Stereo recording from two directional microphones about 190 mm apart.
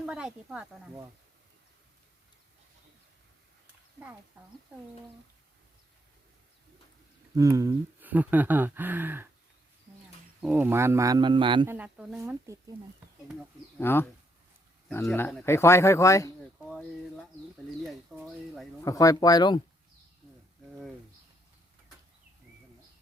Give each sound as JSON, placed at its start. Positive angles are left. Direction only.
{"t": 0.0, "sound": "speech", "side_deg": -5}
{"t": 7.3, "sound": "speech", "side_deg": -15}
{"t": 10.4, "sound": "speech", "side_deg": -10}
{"t": 11.6, "sound": "speech", "side_deg": -10}
{"t": 13.7, "sound": "speech", "side_deg": 10}
{"t": 16.6, "sound": "speech", "side_deg": 0}
{"t": 18.9, "sound": "speech", "side_deg": 20}
{"t": 20.7, "sound": "a sound", "side_deg": 0}